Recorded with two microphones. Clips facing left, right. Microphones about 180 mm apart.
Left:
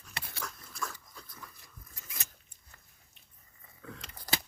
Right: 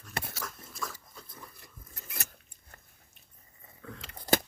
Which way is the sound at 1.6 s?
60° right (ahead or behind).